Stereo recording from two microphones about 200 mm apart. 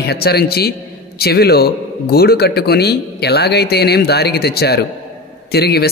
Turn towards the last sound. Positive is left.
turn(degrees=50)  # may be behind; listen again after turning